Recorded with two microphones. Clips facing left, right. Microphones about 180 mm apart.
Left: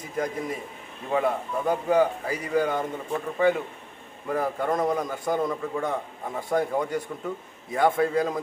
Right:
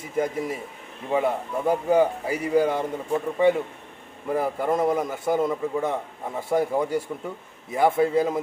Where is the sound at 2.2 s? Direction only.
30° right (ahead or behind).